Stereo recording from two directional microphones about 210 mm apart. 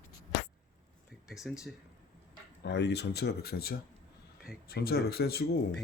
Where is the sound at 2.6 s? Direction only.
55° left (ahead or behind).